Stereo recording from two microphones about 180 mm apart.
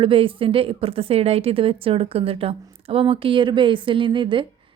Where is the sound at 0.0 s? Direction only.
30° right (ahead or behind).